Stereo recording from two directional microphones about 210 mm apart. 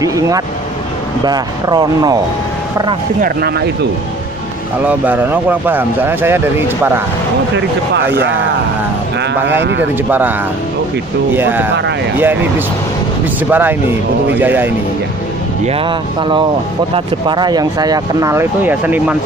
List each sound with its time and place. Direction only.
0.0 s speech: 15° right (ahead or behind)
3.2 s speech: 45° right (ahead or behind)
4.8 s speech: 10° right (ahead or behind)
7.5 s speech: 55° right (ahead or behind)
9.5 s speech: 60° right (ahead or behind)
11.3 s speech: 10° right (ahead or behind)
15.6 s speech: 25° right (ahead or behind); by 19.1 s 10° right (ahead or behind)